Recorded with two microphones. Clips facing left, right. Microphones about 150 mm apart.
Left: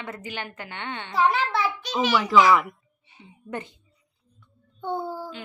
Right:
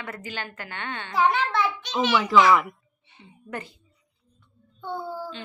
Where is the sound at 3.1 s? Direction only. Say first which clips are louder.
Left 2 dB; 20° left (ahead or behind).